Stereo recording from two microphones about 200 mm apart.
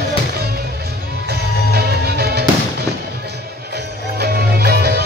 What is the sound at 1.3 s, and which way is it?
Music, 50° right (ahead or behind).